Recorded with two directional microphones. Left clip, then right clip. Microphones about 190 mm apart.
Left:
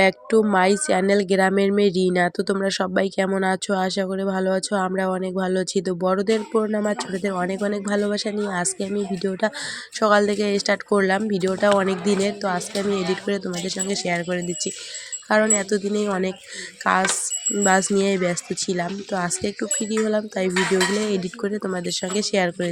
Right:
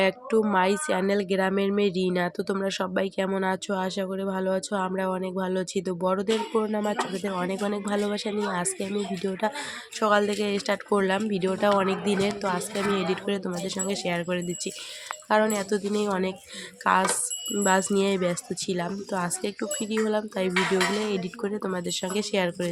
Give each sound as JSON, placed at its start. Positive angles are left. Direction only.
{"t": 0.0, "sound": "speech", "side_deg": 30}